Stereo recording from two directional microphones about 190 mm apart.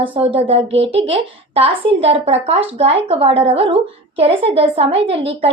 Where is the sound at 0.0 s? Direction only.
25° right (ahead or behind).